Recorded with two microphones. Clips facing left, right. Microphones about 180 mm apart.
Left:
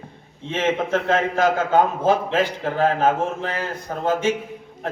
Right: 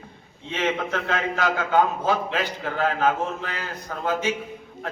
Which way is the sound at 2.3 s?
30° left (ahead or behind).